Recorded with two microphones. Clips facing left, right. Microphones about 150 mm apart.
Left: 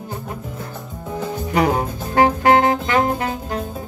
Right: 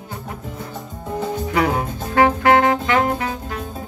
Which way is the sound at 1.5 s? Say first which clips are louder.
Left 3 dB; 40° left (ahead or behind).